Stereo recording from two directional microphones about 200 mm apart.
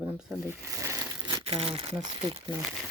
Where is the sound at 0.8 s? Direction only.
15° right (ahead or behind).